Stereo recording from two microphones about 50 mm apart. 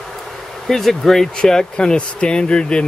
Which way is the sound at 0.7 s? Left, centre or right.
Centre.